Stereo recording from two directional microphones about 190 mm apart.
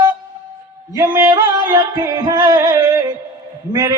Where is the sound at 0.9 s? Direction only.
15° right (ahead or behind).